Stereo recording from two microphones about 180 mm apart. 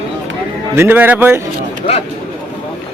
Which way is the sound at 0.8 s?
10° right (ahead or behind).